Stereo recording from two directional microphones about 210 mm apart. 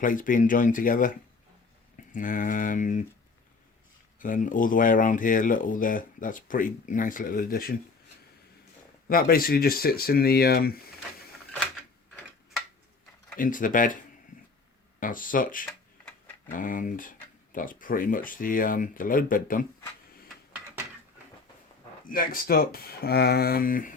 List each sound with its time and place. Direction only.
0.0 s speech: 40° left (ahead or behind)
2.1 s speech: 40° left (ahead or behind)
4.2 s speech: 40° left (ahead or behind)
9.0 s speech: 45° left (ahead or behind)
13.4 s speech: 40° left (ahead or behind)
14.3 s a sound: 40° left (ahead or behind)
15.0 s speech: 40° left (ahead or behind)
22.0 s speech: 40° left (ahead or behind)